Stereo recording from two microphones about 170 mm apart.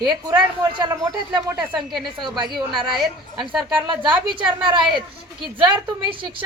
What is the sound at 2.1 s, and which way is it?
Speech, 25° right (ahead or behind).